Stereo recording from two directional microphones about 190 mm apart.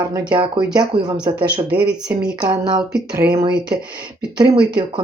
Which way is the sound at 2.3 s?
20° right (ahead or behind).